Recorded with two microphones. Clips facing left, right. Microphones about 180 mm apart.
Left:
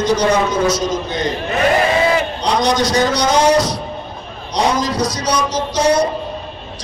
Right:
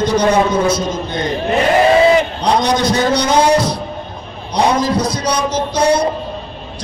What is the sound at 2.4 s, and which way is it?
A man's voice, 55° right (ahead or behind).